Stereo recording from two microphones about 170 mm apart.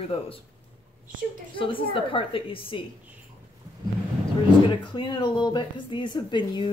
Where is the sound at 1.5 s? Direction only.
30° left (ahead or behind).